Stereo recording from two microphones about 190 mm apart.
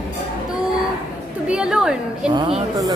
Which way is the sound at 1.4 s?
5° right (ahead or behind).